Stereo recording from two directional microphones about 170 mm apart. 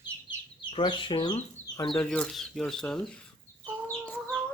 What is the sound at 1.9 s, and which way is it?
Speech, 5° left (ahead or behind).